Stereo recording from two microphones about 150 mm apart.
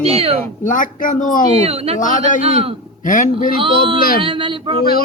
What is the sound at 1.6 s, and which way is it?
Speech, 40° right (ahead or behind).